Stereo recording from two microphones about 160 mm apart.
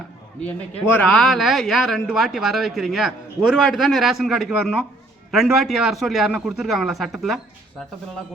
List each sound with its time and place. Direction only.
0.9 s speech: 10° left (ahead or behind)